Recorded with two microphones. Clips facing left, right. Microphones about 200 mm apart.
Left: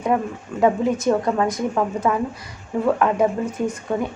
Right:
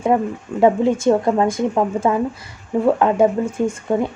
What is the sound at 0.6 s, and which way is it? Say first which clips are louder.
Speech: right 4 dB; 25° right (ahead or behind).